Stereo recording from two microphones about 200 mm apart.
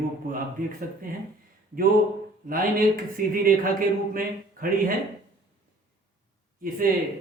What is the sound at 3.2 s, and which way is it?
A man's voice, 45° right (ahead or behind).